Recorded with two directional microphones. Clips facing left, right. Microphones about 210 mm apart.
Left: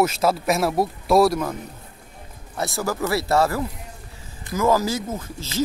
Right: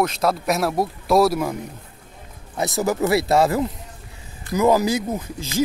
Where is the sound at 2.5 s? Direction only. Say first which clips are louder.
Right 4 dB; 20° right (ahead or behind).